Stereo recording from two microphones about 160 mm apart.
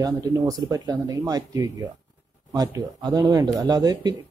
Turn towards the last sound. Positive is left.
turn(degrees=-25)  # may be behind; listen again after turning